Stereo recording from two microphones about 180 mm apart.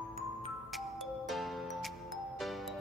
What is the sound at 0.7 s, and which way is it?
Music, centre (ahead or behind).